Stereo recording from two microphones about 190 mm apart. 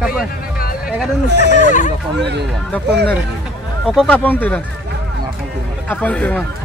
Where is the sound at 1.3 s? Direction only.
65° right (ahead or behind).